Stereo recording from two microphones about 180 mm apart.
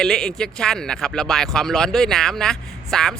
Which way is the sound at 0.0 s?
5° left (ahead or behind).